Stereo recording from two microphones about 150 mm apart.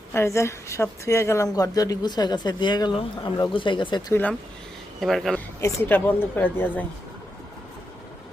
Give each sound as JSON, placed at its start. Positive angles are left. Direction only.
{"t": 0.1, "sound": "speech", "side_deg": 20}
{"t": 4.1, "sound": "a woman's voice", "side_deg": 10}
{"t": 4.9, "sound": "speech", "side_deg": 0}
{"t": 5.5, "sound": "a woman's voice", "side_deg": 15}